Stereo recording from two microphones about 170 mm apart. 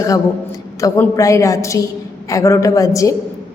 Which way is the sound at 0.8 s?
20° left (ahead or behind).